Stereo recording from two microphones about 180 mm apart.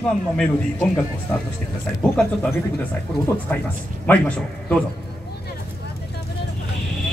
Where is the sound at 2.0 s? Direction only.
5° left (ahead or behind).